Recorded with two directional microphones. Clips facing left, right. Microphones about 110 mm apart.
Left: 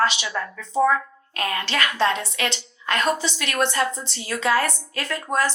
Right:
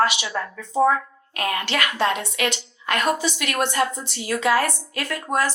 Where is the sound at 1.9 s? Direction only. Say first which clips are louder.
Even; 30° left (ahead or behind).